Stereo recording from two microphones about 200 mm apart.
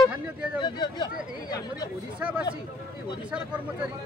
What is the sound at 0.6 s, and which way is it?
Speech, 20° left (ahead or behind).